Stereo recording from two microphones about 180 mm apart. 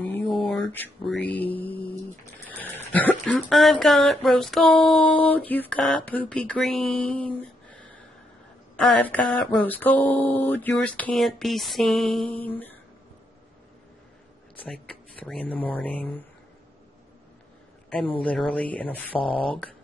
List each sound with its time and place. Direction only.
0.0 s mantra: 10° left (ahead or behind)
0.5 s speech: 10° left (ahead or behind)
14.6 s speech: 5° left (ahead or behind)
18.2 s speech: 5° left (ahead or behind)